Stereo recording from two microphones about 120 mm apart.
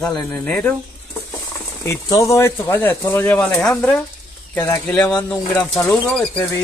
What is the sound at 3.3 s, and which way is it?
Speech, 10° left (ahead or behind).